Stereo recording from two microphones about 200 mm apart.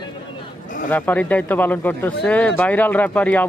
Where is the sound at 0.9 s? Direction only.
5° left (ahead or behind).